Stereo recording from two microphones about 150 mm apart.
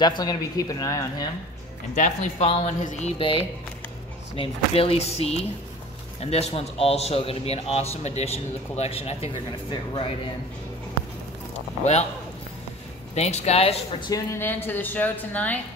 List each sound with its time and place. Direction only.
0.0 s speech: 25° left (ahead or behind)
2.0 s a man's voice: 50° left (ahead or behind)
11.8 s a man's voice: 50° left (ahead or behind)
13.1 s a man's voice: 45° left (ahead or behind)
14.0 s speech: 20° left (ahead or behind)